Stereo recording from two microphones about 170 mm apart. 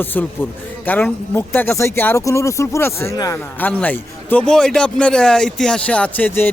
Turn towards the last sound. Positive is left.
turn(degrees=10)  # may be behind; listen again after turning